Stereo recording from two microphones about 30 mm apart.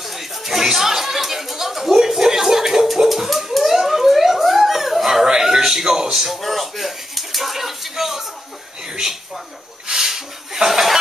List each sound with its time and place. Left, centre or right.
0.0 s a sound: centre
5.2 s speech: right
6.4 s slap: centre
9.8 s chuckle: centre